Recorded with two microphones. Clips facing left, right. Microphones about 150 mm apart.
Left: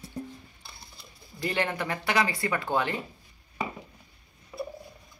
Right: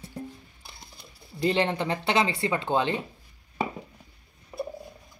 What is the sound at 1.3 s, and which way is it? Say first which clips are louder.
Speech: right 5 dB; 25° right (ahead or behind).